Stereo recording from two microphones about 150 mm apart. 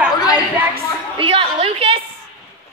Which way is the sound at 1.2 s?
35° right (ahead or behind).